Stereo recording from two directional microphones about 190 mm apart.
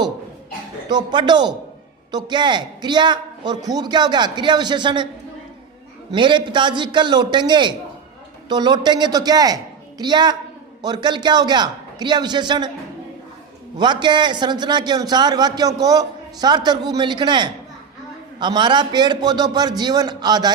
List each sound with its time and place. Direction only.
0.9 s a man's voice: 20° right (ahead or behind)
6.1 s a man's voice: 25° right (ahead or behind)
13.7 s a man's voice: 25° right (ahead or behind)